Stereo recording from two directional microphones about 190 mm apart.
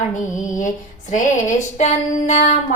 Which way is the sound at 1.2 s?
40° left (ahead or behind).